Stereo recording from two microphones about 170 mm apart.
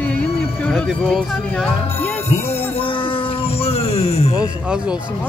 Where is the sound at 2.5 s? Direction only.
35° left (ahead or behind).